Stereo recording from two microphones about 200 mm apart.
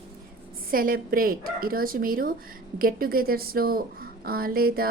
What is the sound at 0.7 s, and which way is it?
A woman's voice, 45° right (ahead or behind).